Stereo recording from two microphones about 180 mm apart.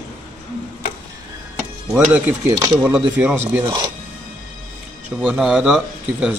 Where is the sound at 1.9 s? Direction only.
5° right (ahead or behind).